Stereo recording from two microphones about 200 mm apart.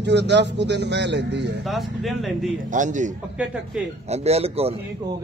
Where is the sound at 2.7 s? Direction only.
40° right (ahead or behind).